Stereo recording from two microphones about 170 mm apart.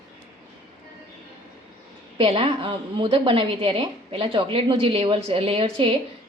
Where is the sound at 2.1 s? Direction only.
35° right (ahead or behind).